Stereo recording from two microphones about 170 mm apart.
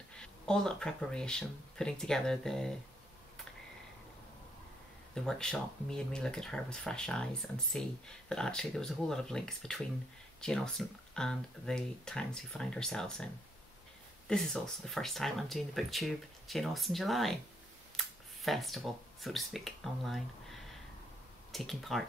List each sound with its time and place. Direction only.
0.2 s speech: 5° left (ahead or behind)
5.1 s speech: 5° left (ahead or behind)
8.3 s speech: 5° left (ahead or behind)